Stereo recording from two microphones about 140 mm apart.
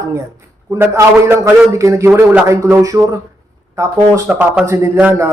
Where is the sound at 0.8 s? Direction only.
20° right (ahead or behind).